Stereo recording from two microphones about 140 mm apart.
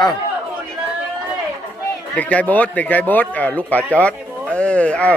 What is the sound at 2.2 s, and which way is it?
A man's voice, 10° left (ahead or behind).